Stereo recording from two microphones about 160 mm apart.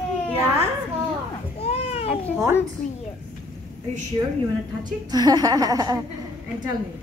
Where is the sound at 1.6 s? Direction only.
35° left (ahead or behind).